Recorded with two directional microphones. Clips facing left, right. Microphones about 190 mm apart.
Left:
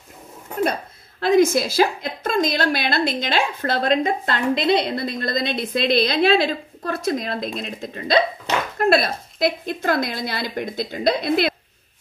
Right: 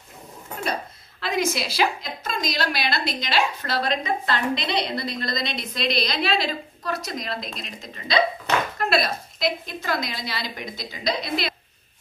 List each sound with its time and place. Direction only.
1.2 s a woman's voice: 50° left (ahead or behind)